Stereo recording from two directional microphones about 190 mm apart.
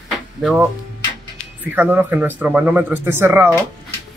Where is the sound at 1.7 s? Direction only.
10° right (ahead or behind).